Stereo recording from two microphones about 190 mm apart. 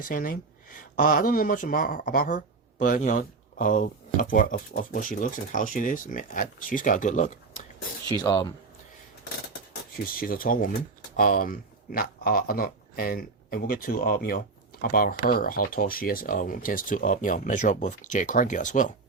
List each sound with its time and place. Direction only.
0.0 s speech: 45° left (ahead or behind)
8.2 s speech: 20° left (ahead or behind)
10.2 s speech: 50° left (ahead or behind)